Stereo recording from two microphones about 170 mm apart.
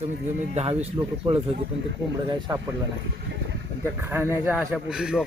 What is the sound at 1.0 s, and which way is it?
Speech, 25° right (ahead or behind).